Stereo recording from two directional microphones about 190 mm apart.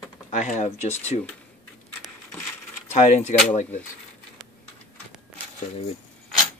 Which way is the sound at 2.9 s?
35° left (ahead or behind).